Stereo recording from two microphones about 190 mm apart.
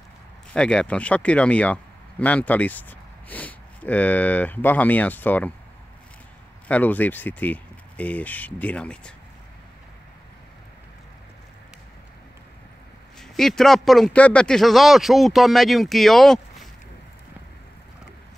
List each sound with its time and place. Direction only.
0.5 s speech: 5° left (ahead or behind)
6.7 s speech: 10° left (ahead or behind)
13.2 s a man's voice: centre (ahead or behind)